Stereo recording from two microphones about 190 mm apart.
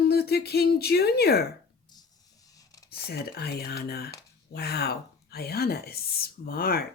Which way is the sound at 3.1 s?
55° left (ahead or behind).